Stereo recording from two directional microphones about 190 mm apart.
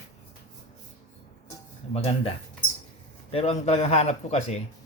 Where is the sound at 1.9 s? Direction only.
30° left (ahead or behind).